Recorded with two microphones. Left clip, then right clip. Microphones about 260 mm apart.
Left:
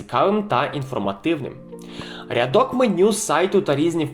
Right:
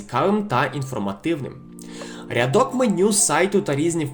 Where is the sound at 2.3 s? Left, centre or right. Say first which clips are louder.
Left 1 dB; right.